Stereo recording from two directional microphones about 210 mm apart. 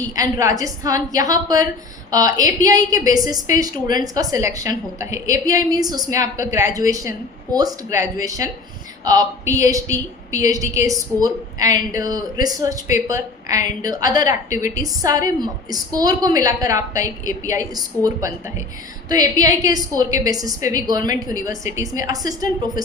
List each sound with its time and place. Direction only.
0.0 s a woman's voice: 15° right (ahead or behind)